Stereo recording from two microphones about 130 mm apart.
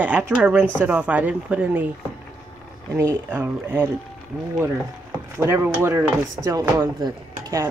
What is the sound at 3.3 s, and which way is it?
Speech, 15° right (ahead or behind).